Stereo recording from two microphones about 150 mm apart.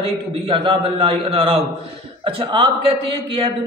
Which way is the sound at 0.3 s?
35° right (ahead or behind).